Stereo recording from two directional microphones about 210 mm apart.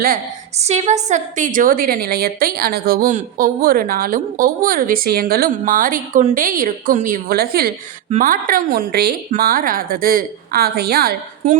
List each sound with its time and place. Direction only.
0.0 s a woman's voice: 35° right (ahead or behind)